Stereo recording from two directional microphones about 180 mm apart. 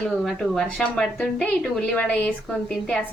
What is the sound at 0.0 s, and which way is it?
A woman's voice, centre (ahead or behind).